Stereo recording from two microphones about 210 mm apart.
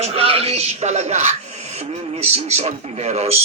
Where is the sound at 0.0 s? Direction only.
25° right (ahead or behind).